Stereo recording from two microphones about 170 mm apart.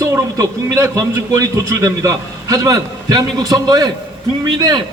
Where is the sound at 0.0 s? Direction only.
20° right (ahead or behind).